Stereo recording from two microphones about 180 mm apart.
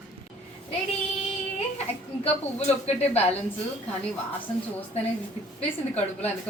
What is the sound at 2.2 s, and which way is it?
Speech, 35° left (ahead or behind).